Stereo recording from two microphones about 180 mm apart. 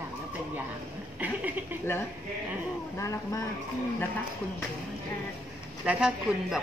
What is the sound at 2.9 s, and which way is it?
Speech, 15° left (ahead or behind).